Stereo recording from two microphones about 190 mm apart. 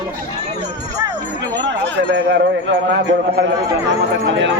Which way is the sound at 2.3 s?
75° right (ahead or behind).